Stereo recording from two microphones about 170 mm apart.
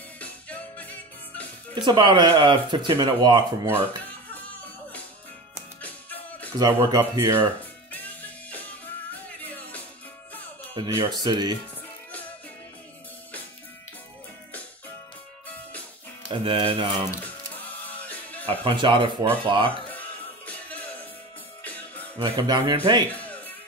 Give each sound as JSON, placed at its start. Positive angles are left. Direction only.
{"t": 0.2, "sound": "music", "side_deg": 10}
{"t": 1.9, "sound": "speech", "side_deg": -25}
{"t": 5.8, "sound": "music", "side_deg": 10}
{"t": 6.6, "sound": "speech", "side_deg": -20}
{"t": 7.9, "sound": "music", "side_deg": 10}
{"t": 10.8, "sound": "speech", "side_deg": -25}
{"t": 16.3, "sound": "speech", "side_deg": -30}
{"t": 17.1, "sound": "music", "side_deg": 10}
{"t": 18.6, "sound": "speech", "side_deg": -30}
{"t": 19.9, "sound": "music", "side_deg": 10}
{"t": 22.2, "sound": "speech", "side_deg": -25}
{"t": 23.1, "sound": "music", "side_deg": 10}